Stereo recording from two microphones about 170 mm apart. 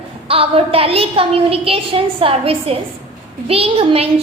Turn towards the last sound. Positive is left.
turn(degrees=-35)  # may be behind; listen again after turning